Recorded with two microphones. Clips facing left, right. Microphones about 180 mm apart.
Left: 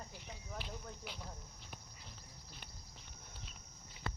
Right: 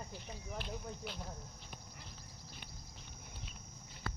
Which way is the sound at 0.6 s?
5° left (ahead or behind).